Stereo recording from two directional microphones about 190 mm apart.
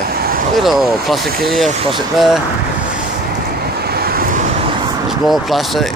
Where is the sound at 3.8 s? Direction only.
55° right (ahead or behind).